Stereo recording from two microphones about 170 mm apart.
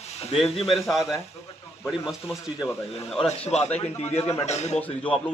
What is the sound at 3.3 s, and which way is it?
A man's voice, 40° left (ahead or behind).